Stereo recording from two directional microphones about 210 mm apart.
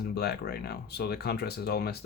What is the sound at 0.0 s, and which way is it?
Speech, 50° left (ahead or behind).